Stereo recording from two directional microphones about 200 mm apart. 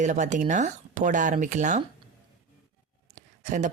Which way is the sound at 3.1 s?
40° right (ahead or behind).